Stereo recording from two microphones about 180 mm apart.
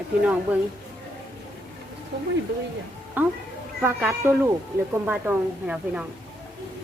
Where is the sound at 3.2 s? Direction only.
10° right (ahead or behind).